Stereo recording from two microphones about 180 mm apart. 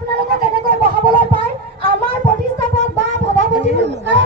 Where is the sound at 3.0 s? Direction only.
75° right (ahead or behind).